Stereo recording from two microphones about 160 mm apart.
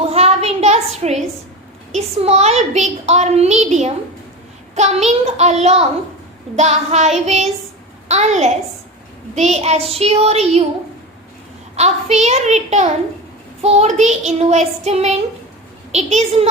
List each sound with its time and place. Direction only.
0.0 s a sound: 40° right (ahead or behind)
1.9 s a woman's voice: 45° right (ahead or behind)
9.9 s child singing: 40° right (ahead or behind)
11.8 s a woman's voice: 45° right (ahead or behind)